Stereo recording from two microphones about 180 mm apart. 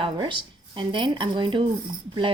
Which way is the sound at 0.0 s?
25° right (ahead or behind).